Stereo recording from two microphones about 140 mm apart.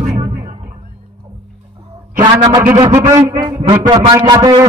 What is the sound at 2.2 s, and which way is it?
A man's voice, 30° right (ahead or behind).